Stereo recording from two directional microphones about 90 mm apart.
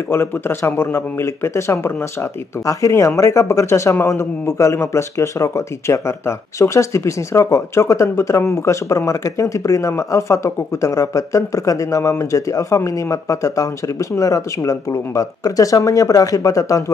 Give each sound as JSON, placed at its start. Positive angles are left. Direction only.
{"t": 0.1, "sound": "a man's voice", "side_deg": 25}